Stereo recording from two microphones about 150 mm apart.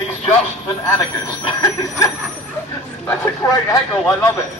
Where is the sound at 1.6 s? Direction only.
20° left (ahead or behind).